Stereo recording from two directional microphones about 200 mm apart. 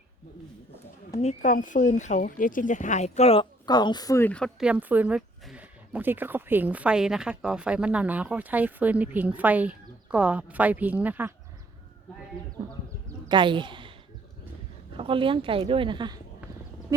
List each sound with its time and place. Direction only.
1.2 s speech: 35° left (ahead or behind); by 11.3 s 10° right (ahead or behind)
13.2 s speech: 25° right (ahead or behind)
14.9 s a woman's voice: 25° right (ahead or behind)